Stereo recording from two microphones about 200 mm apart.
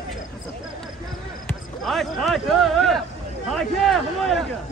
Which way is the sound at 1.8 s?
Centre (ahead or behind).